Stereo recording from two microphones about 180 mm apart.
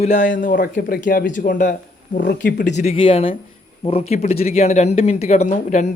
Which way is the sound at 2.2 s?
75° left (ahead or behind).